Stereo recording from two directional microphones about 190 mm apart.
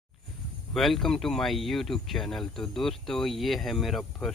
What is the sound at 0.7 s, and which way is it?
Speech, centre (ahead or behind).